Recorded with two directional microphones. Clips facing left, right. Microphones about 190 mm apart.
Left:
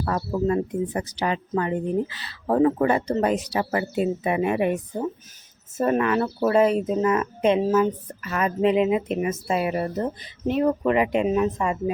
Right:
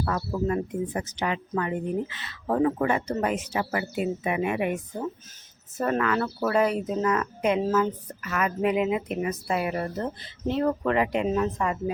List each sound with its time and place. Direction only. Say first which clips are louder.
0.0 s speech: left 3 dB; 35° left (ahead or behind)
5.7 s speech: left 4 dB; 20° left (ahead or behind)